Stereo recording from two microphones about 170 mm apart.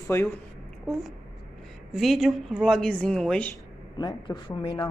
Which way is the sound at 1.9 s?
Centre (ahead or behind).